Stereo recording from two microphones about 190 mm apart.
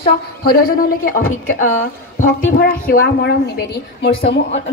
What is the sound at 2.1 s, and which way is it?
A woman's voice, 50° left (ahead or behind).